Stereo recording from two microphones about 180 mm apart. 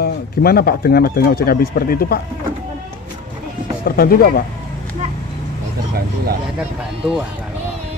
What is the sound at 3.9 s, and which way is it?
Speech, 55° left (ahead or behind).